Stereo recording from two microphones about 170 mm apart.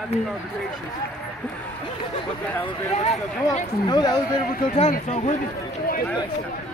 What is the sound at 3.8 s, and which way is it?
Speech, 25° left (ahead or behind).